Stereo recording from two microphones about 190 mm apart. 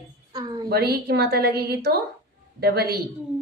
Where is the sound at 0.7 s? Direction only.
55° right (ahead or behind).